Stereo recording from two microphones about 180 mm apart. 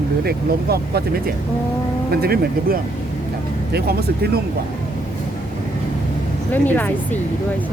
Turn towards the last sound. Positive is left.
turn(degrees=10)  # may be behind; listen again after turning